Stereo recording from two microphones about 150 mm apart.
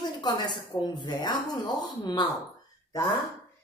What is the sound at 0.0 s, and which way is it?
Speech, 30° left (ahead or behind).